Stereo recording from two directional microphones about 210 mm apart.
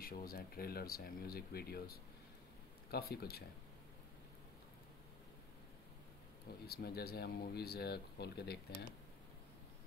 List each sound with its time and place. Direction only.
0.0 s speech: 45° left (ahead or behind)
6.6 s speech: 45° left (ahead or behind)